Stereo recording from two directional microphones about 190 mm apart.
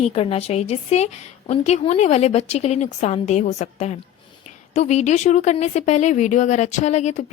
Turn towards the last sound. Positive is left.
turn(degrees=35)  # may be behind; listen again after turning